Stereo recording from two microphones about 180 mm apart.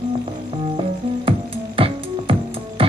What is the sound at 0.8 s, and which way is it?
Music, 30° right (ahead or behind).